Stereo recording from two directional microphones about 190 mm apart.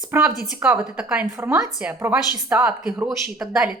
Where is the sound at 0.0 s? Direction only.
5° right (ahead or behind).